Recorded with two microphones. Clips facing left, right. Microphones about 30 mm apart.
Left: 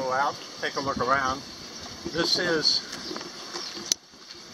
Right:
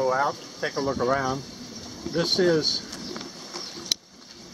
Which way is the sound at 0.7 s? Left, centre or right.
Centre.